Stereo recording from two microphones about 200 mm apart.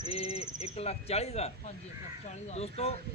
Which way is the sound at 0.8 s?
30° left (ahead or behind).